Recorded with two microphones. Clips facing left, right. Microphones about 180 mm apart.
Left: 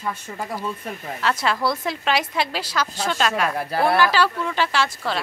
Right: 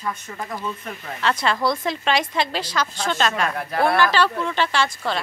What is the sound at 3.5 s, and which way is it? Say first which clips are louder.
Speech: left 2 dB; 35° left (ahead or behind).